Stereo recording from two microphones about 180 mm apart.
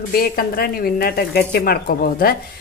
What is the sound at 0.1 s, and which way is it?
A woman's voice, 55° left (ahead or behind).